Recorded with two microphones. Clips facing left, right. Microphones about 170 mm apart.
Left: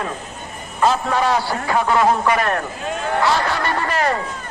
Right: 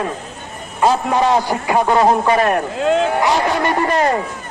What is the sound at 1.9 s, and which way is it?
A man's voice, 30° right (ahead or behind).